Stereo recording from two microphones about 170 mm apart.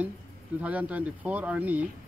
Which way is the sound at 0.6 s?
10° right (ahead or behind).